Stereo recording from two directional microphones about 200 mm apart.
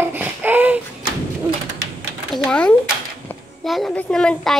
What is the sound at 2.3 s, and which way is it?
A woman's voice, 5° left (ahead or behind).